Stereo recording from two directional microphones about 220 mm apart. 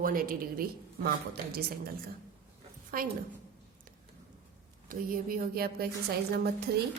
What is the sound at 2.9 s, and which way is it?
Speech, 40° right (ahead or behind).